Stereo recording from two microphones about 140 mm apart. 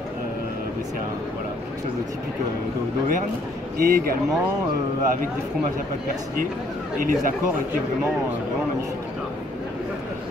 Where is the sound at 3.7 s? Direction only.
90° right.